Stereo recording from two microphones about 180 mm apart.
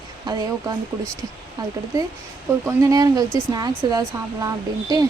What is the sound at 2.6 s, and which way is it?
Speech, 20° right (ahead or behind).